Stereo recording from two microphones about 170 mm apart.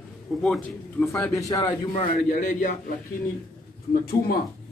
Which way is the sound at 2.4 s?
50° left (ahead or behind).